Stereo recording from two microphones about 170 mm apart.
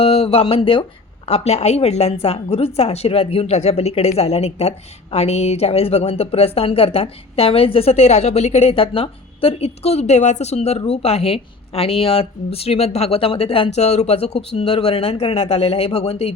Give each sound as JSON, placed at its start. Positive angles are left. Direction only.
{"t": 0.0, "sound": "a woman's voice", "side_deg": 35}